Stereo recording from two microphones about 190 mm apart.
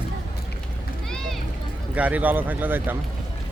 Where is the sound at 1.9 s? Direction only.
10° right (ahead or behind).